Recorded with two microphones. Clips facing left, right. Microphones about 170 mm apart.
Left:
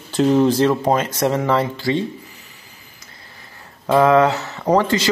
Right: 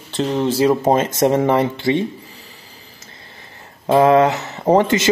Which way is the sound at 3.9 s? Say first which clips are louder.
Right 1 dB; 20° right (ahead or behind).